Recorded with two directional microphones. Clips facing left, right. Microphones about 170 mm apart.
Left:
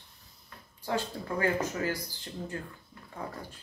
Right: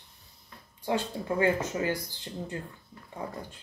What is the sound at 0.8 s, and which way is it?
Speech, 20° right (ahead or behind).